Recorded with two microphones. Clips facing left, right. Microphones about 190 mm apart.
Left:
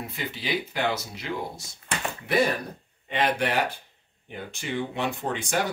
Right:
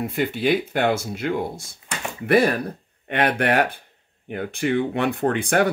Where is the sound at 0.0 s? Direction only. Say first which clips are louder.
Right 11 dB; 55° right (ahead or behind).